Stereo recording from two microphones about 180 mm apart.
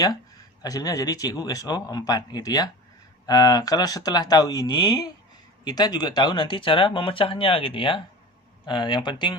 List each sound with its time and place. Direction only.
0.6 s speech: 20° left (ahead or behind)